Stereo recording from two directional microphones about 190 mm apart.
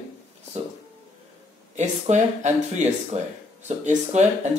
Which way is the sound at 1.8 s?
35° right (ahead or behind).